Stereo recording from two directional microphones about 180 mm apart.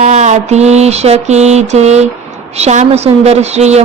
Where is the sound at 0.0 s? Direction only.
40° right (ahead or behind).